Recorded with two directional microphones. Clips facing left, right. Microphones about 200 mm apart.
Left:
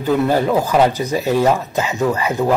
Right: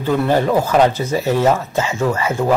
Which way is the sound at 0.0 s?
10° left (ahead or behind).